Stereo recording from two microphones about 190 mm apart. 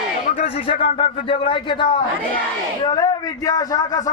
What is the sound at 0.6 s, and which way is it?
A man's voice, 30° left (ahead or behind).